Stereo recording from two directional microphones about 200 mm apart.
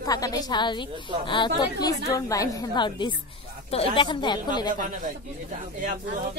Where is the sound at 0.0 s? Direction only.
20° left (ahead or behind).